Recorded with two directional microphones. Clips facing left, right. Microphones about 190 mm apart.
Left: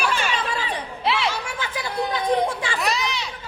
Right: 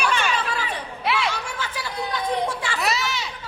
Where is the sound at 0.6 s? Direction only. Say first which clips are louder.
Left 1 dB; 25° left (ahead or behind).